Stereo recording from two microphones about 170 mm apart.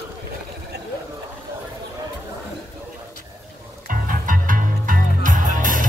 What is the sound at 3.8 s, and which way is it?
Music, 50° right (ahead or behind).